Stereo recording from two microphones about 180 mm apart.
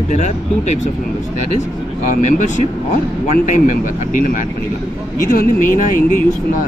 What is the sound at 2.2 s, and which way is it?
Speech, 40° left (ahead or behind).